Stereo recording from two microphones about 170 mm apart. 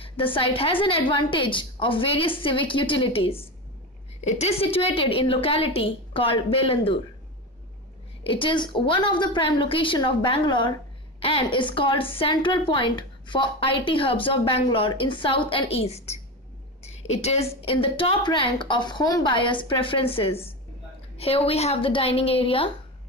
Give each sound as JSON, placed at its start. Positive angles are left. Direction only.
{"t": 0.0, "sound": "a woman's voice", "side_deg": 30}
{"t": 8.2, "sound": "a woman's voice", "side_deg": 30}